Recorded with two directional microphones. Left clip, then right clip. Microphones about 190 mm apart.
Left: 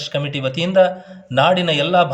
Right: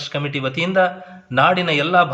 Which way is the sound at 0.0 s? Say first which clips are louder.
Left 1 dB; 40° left (ahead or behind).